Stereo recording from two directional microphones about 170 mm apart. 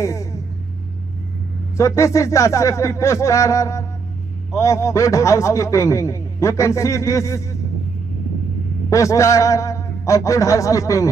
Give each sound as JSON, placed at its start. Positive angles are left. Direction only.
{"t": 0.0, "sound": "speech", "side_deg": 15}
{"t": 1.8, "sound": "a man's voice", "side_deg": 15}
{"t": 8.9, "sound": "a man's voice", "side_deg": 20}